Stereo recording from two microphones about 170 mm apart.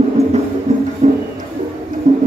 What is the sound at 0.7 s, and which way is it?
Music, 40° right (ahead or behind).